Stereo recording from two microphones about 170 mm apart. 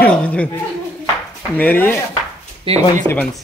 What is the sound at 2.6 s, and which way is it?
Speech, 40° right (ahead or behind).